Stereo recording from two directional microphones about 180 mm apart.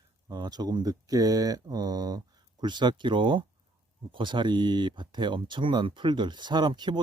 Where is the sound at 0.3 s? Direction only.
20° right (ahead or behind).